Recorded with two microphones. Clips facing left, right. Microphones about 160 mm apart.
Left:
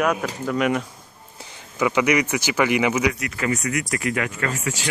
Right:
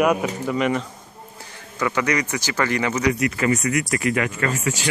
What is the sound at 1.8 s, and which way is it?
Speech, 15° left (ahead or behind).